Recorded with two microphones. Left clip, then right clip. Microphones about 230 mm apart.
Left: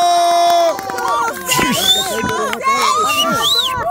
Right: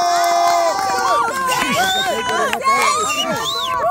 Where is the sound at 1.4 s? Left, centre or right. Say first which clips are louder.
Left 1 dB; left.